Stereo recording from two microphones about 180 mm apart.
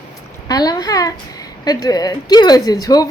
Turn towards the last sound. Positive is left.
turn(degrees=20)  # may be behind; listen again after turning